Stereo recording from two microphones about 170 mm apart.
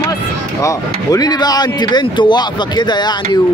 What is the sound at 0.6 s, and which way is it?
Speech, 20° left (ahead or behind).